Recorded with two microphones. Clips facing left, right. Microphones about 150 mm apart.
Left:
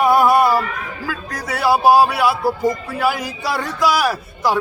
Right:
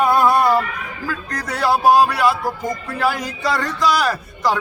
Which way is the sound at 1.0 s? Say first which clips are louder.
Right 2 dB; 5° left (ahead or behind).